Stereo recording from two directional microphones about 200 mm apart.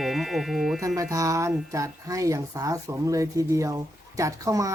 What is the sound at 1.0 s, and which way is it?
Speech, 15° right (ahead or behind).